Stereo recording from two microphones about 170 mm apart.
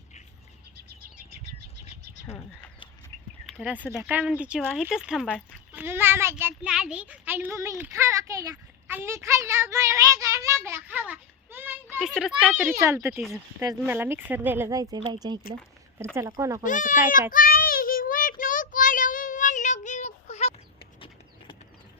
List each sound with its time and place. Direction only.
2.2 s speech: 15° left (ahead or behind)
3.4 s speech: 5° right (ahead or behind)
4.7 s a child's voice: 5° left (ahead or behind)
5.7 s a child's voice: 10° right (ahead or behind)
11.9 s a child's voice: centre (ahead or behind); by 16.6 s 20° right (ahead or behind)
16.6 s a child's voice: 50° left (ahead or behind)
17.3 s child singing: 55° left (ahead or behind); by 20.5 s 40° left (ahead or behind)